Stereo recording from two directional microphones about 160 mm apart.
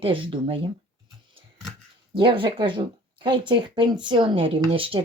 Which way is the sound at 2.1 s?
30° right (ahead or behind).